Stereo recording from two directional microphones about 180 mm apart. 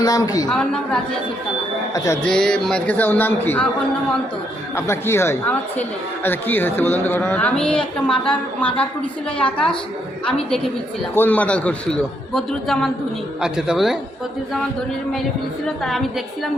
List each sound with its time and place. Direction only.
0.0 s a man's voice: 20° left (ahead or behind)
0.5 s a man's voice: 5° left (ahead or behind)
1.9 s a man's voice: 20° left (ahead or behind)
2.2 s a woman's voice: 5° left (ahead or behind)
4.7 s a woman's voice: 15° left (ahead or behind); by 14.0 s centre (ahead or behind)
15.6 s a man's voice: centre (ahead or behind)